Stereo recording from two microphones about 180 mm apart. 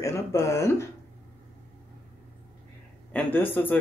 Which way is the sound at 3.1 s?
10° left (ahead or behind).